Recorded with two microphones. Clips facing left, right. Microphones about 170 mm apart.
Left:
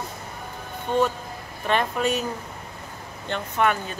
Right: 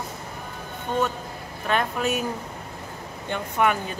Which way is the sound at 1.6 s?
5° right (ahead or behind).